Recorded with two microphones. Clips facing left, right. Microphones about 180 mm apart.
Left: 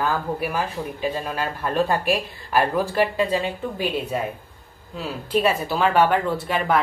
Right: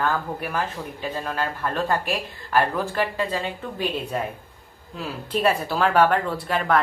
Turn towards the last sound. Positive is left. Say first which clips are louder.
# left 1 dB
turn(degrees=5)  # may be behind; listen again after turning